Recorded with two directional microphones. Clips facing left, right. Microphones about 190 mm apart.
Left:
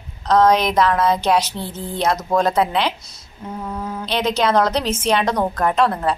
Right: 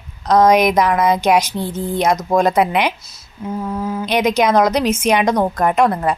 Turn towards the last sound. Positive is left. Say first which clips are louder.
# right 3 dB
turn(degrees=-15)  # may be behind; listen again after turning